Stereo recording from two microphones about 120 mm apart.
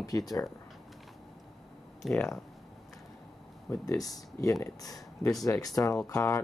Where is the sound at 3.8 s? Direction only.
30° left (ahead or behind).